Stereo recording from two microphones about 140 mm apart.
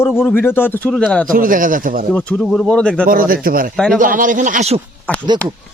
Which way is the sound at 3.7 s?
5° left (ahead or behind).